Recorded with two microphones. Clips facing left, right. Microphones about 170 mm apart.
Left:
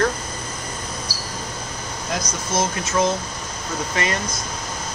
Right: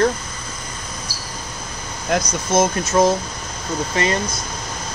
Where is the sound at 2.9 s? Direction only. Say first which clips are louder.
Right 5 dB; 35° right (ahead or behind).